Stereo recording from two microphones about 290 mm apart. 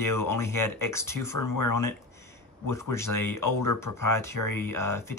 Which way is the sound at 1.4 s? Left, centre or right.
Left.